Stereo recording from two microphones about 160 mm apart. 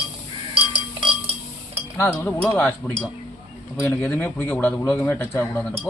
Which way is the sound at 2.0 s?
15° left (ahead or behind).